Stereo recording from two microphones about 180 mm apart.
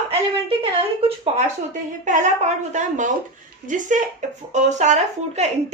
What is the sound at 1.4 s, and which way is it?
A woman's voice, 45° right (ahead or behind).